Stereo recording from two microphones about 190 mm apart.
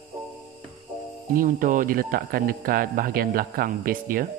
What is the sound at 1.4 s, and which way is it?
Speech, 45° right (ahead or behind).